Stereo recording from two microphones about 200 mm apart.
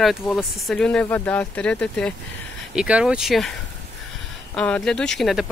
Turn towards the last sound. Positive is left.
turn(degrees=0)  # may be behind; listen again after turning